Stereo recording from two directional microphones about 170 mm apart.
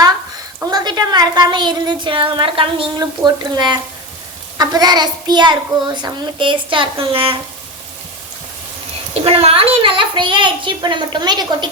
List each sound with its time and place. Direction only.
0.7 s a woman's voice: 25° right (ahead or behind)
9.1 s a woman's voice: 35° right (ahead or behind)